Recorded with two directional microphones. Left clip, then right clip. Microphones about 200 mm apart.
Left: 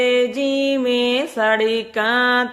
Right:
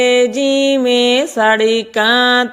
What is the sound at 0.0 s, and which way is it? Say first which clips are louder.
Music: right 5 dB; 35° right (ahead or behind).